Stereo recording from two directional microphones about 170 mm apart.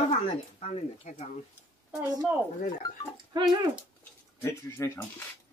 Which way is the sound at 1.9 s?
10° right (ahead or behind).